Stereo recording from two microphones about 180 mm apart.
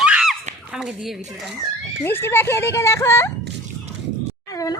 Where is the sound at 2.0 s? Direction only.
10° left (ahead or behind).